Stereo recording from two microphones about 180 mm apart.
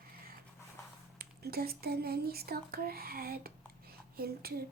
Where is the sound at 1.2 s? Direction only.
60° right (ahead or behind).